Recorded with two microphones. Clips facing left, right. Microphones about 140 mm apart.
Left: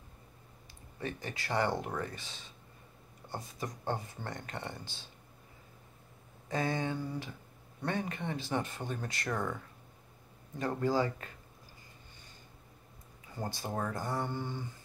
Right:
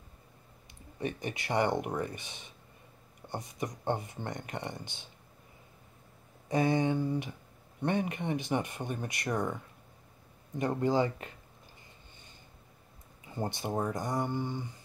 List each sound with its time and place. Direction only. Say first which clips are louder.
0.9 s speech: right 4 dB; 20° right (ahead or behind)
6.5 s speech: right 6 dB; 20° right (ahead or behind)
10.6 s speech: right 3 dB; 20° right (ahead or behind)
13.3 s speech: right 4 dB; 20° right (ahead or behind)